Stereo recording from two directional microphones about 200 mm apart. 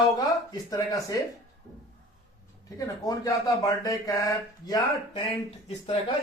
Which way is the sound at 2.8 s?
15° left (ahead or behind).